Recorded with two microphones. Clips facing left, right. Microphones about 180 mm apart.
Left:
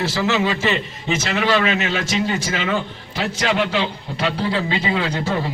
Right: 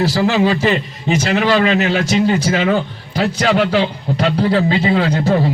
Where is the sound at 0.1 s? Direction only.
40° right (ahead or behind).